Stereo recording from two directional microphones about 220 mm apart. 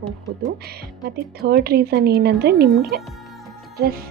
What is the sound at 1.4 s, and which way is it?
Speech, 45° right (ahead or behind).